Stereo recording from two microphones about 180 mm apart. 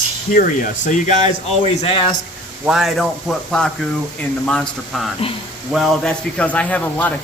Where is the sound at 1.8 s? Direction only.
30° left (ahead or behind).